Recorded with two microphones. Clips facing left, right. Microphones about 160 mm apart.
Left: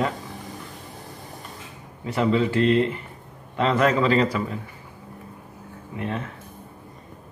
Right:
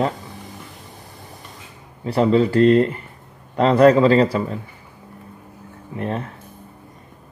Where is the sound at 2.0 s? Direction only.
35° right (ahead or behind).